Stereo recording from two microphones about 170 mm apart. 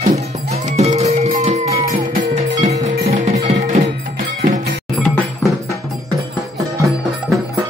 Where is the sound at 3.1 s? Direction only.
45° right (ahead or behind).